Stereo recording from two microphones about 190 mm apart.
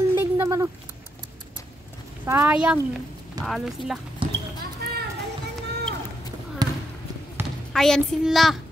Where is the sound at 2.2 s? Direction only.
15° right (ahead or behind).